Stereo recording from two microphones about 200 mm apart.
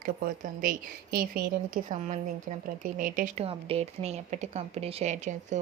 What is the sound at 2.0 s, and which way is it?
A woman's voice, 35° right (ahead or behind).